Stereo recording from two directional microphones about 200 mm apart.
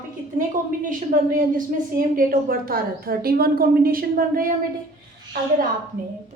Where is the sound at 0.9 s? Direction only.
45° right (ahead or behind).